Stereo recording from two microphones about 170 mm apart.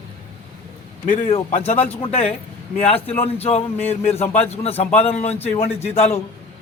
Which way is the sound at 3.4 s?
35° left (ahead or behind).